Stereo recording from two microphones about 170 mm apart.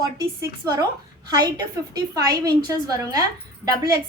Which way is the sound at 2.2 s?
25° right (ahead or behind).